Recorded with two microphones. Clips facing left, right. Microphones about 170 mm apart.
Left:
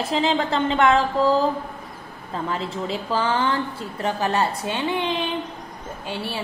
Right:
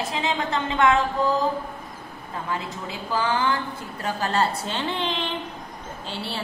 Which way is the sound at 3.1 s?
30° left (ahead or behind).